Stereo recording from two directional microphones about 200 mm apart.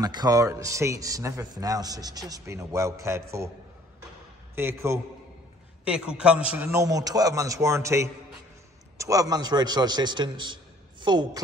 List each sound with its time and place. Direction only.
0.0 s a man's voice: 20° right (ahead or behind)
4.6 s a man's voice: 10° right (ahead or behind)